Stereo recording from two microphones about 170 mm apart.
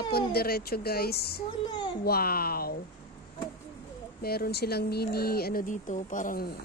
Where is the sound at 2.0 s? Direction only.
65° left (ahead or behind).